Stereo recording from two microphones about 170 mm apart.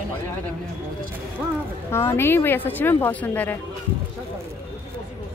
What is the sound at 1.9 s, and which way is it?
Speech, 15° left (ahead or behind).